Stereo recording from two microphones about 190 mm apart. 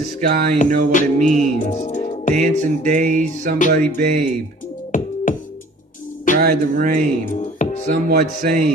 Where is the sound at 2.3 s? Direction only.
40° right (ahead or behind).